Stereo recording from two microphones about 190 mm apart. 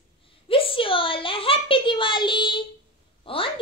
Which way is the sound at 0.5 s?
30° left (ahead or behind).